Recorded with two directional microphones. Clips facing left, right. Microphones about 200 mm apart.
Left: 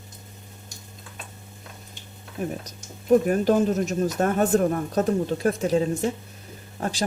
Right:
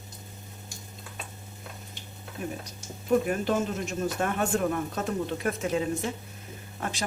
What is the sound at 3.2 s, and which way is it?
Speech, 40° left (ahead or behind).